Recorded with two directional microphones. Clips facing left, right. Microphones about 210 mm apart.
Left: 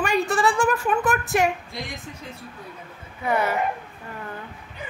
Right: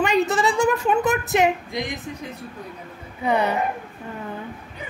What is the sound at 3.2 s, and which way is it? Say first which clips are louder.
Speech: right 2 dB; 20° right (ahead or behind).